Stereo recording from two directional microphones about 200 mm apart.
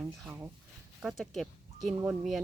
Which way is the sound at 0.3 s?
10° right (ahead or behind).